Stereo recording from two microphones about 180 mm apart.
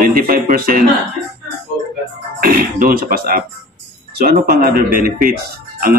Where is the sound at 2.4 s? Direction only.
50° right (ahead or behind).